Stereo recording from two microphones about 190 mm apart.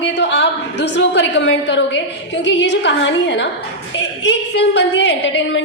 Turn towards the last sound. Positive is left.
turn(degrees=70)  # may be behind; listen again after turning